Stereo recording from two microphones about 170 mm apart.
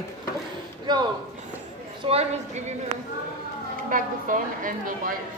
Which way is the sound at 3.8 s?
50° right (ahead or behind).